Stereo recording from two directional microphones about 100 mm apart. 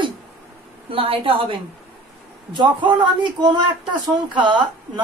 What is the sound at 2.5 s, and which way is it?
A woman's voice, 50° right (ahead or behind).